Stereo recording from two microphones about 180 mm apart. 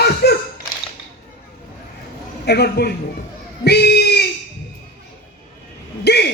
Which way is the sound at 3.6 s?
65° left (ahead or behind).